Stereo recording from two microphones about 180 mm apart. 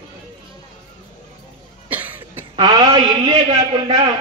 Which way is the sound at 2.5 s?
30° right (ahead or behind).